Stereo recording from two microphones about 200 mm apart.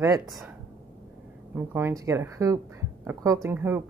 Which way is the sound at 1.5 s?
10° right (ahead or behind).